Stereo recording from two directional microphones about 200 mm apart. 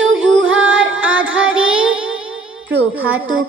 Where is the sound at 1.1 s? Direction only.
75° right (ahead or behind).